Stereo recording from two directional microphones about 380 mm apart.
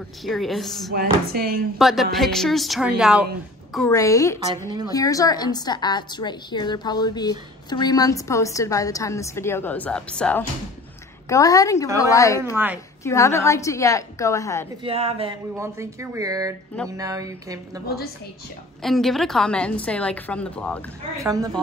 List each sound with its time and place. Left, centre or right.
0.2 s a woman's voice: centre
0.9 s speech: right
1.8 s a woman's voice: centre
12.6 s a woman's voice: centre
13.0 s a woman's voice: centre
14.8 s a woman's voice: centre
21.2 s speech: centre